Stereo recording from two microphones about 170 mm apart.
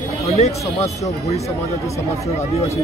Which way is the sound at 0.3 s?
40° left (ahead or behind).